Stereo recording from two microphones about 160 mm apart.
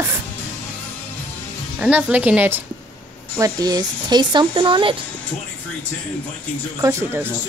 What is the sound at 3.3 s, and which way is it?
Speech, 20° right (ahead or behind).